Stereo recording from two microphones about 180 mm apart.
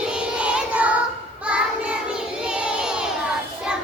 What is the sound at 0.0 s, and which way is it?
Child singing, 5° right (ahead or behind).